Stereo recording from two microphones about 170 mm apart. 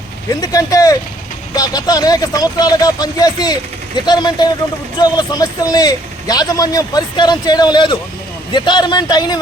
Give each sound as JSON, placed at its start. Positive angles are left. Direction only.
{"t": 0.3, "sound": "speech", "side_deg": 20}